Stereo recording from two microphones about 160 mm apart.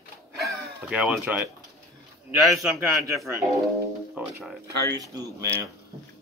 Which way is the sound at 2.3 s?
20° right (ahead or behind).